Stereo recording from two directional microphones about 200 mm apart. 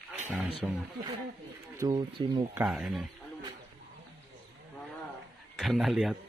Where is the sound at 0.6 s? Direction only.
5° right (ahead or behind).